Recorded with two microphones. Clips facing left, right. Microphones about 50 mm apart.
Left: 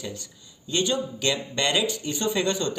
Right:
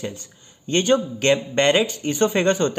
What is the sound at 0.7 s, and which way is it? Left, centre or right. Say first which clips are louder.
Speech: right 7 dB; right.